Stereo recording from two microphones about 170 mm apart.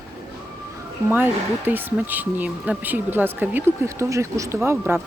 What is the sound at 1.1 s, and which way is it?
Speech, 10° right (ahead or behind).